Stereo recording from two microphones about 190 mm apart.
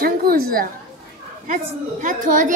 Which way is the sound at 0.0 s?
50° right (ahead or behind).